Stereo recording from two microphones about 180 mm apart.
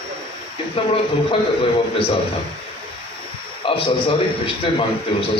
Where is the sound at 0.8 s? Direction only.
30° left (ahead or behind).